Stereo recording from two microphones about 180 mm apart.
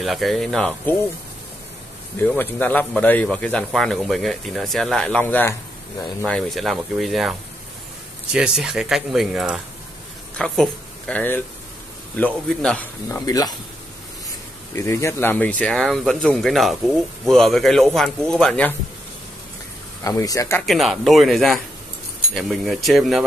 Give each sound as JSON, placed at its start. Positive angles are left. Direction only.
{"t": 0.0, "sound": "speech", "side_deg": 0}
{"t": 2.1, "sound": "speech", "side_deg": 10}
{"t": 13.1, "sound": "speech", "side_deg": 20}
{"t": 14.7, "sound": "speech", "side_deg": 15}
{"t": 20.0, "sound": "speech", "side_deg": 20}
{"t": 20.6, "sound": "speech", "side_deg": 0}